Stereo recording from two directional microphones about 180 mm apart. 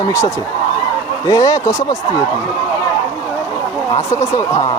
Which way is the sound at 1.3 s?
20° left (ahead or behind).